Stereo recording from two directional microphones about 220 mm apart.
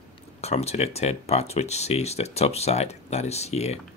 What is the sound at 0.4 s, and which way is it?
Speech, 30° left (ahead or behind).